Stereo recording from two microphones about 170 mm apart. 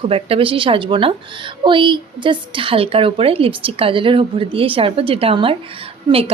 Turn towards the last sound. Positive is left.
turn(degrees=-35)  # may be behind; listen again after turning